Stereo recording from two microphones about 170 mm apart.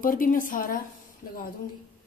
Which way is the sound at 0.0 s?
55° left (ahead or behind).